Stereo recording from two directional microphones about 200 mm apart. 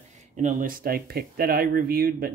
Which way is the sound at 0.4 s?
40° right (ahead or behind).